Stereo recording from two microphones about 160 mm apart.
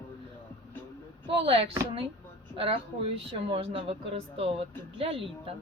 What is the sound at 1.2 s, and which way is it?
A woman's voice, 35° right (ahead or behind).